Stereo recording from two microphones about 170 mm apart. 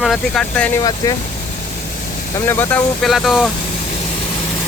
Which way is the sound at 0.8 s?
25° left (ahead or behind).